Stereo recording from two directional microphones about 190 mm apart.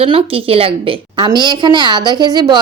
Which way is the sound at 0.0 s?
30° right (ahead or behind).